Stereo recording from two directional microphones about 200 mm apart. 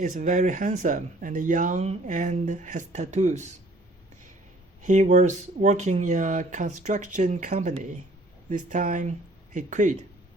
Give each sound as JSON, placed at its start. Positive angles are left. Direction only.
{"t": 0.0, "sound": "speech", "side_deg": -40}
{"t": 4.8, "sound": "speech", "side_deg": -35}